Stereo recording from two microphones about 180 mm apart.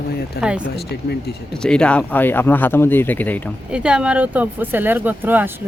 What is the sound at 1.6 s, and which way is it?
Speech, 5° left (ahead or behind).